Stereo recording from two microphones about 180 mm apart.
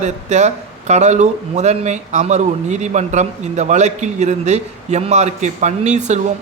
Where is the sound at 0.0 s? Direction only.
40° right (ahead or behind).